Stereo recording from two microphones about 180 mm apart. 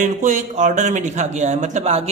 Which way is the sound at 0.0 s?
40° right (ahead or behind).